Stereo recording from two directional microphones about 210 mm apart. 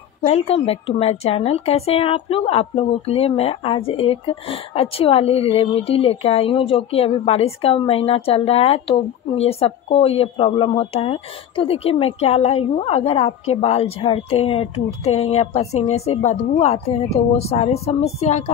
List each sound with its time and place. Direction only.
0.3 s speech: 30° left (ahead or behind)